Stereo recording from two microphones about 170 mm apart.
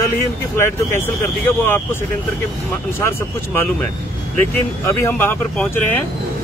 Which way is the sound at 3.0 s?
15° left (ahead or behind).